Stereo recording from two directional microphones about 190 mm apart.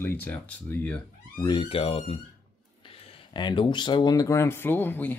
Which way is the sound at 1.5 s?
25° left (ahead or behind).